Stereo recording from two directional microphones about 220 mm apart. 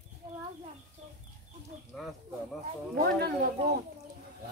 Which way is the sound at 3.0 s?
45° right (ahead or behind).